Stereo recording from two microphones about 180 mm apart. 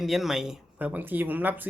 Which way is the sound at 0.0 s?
Centre (ahead or behind).